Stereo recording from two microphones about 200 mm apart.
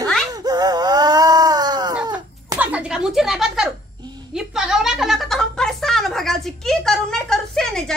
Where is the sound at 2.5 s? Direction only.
5° right (ahead or behind).